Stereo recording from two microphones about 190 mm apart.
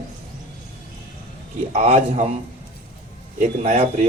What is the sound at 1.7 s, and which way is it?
Speech, 35° right (ahead or behind).